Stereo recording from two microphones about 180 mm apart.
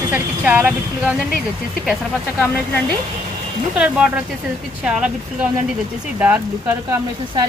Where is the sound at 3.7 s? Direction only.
5° right (ahead or behind).